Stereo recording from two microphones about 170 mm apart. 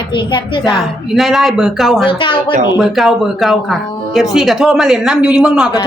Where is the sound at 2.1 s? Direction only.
30° left (ahead or behind).